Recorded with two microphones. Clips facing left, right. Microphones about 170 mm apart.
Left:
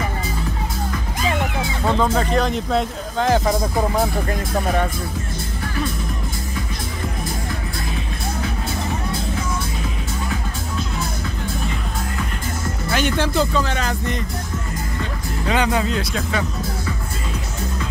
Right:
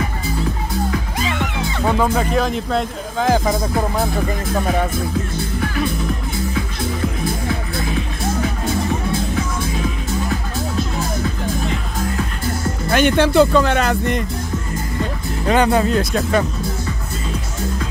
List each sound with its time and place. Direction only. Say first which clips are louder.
1.9 s speech: right 1 dB; 10° right (ahead or behind)
12.9 s speech: right 7 dB; 65° right (ahead or behind)
15.4 s speech: right 5 dB; 45° right (ahead or behind)